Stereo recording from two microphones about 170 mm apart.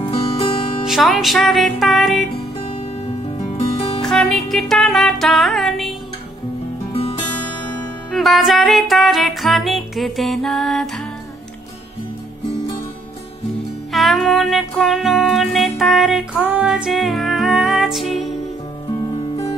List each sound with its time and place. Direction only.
0.0 s music: 30° left (ahead or behind)
0.8 s music: centre (ahead or behind)
4.0 s music: 5° left (ahead or behind)
6.9 s music: 35° left (ahead or behind)
8.1 s music: centre (ahead or behind)
13.9 s music: centre (ahead or behind)